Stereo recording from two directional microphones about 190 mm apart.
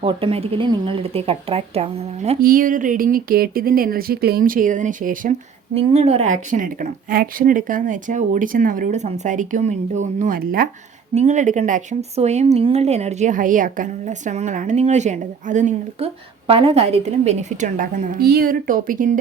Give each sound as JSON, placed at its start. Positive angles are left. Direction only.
{"t": 0.0, "sound": "speech", "side_deg": -30}
{"t": 2.4, "sound": "speech", "side_deg": -45}
{"t": 5.7, "sound": "speech", "side_deg": -35}
{"t": 6.5, "sound": "speech", "side_deg": -45}
{"t": 11.1, "sound": "speech", "side_deg": -35}
{"t": 16.5, "sound": "speech", "side_deg": -30}